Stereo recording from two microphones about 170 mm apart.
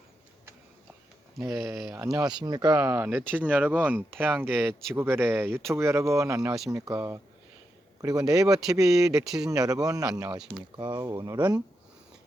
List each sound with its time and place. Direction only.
1.5 s speech: centre (ahead or behind)
1.9 s speech: 20° right (ahead or behind)
9.2 s speech: 5° right (ahead or behind)
9.5 s speech: 20° right (ahead or behind)